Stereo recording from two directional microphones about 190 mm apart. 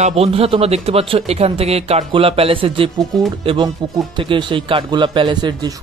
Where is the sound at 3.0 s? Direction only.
Centre (ahead or behind).